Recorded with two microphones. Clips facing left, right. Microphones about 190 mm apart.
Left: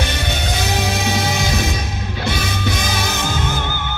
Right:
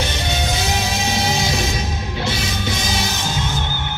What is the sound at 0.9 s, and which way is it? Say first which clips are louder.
Music: left 1 dB; 55° left (ahead or behind).